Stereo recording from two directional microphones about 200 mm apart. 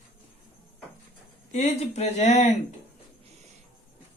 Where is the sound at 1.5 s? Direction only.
35° left (ahead or behind).